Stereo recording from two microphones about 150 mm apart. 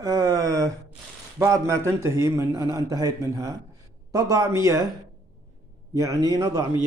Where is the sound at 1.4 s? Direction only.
20° right (ahead or behind).